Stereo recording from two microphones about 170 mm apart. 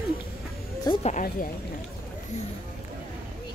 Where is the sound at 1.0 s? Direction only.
55° left (ahead or behind).